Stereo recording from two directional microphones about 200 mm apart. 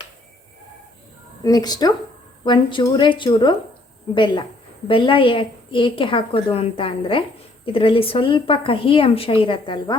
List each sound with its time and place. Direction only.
1.5 s a woman's voice: 20° left (ahead or behind)